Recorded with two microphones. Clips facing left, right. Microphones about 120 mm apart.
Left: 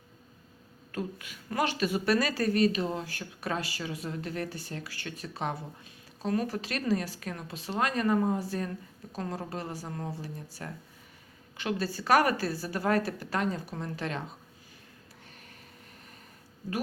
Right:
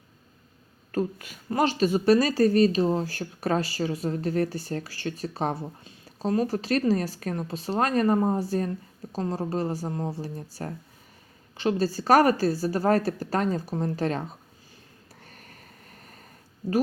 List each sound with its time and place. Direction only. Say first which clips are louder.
0.9 s a woman's voice: right 8 dB; 40° right (ahead or behind)